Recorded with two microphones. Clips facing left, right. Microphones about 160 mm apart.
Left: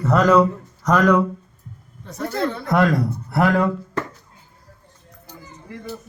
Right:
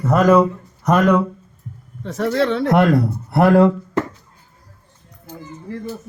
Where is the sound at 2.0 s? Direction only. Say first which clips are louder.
Right 6 dB; 90° right.